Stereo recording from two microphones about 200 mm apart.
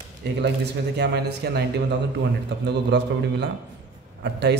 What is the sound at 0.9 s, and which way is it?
Speech, 55° right (ahead or behind).